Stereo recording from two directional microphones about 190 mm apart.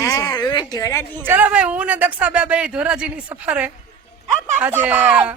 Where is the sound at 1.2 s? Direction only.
10° right (ahead or behind).